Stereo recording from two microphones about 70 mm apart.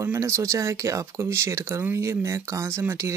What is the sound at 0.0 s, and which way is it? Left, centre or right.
Speech, right.